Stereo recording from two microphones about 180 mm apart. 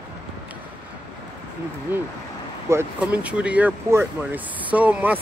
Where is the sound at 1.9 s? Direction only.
10° right (ahead or behind).